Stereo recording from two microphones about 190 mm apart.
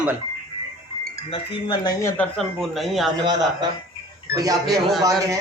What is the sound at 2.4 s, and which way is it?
Speech, centre (ahead or behind).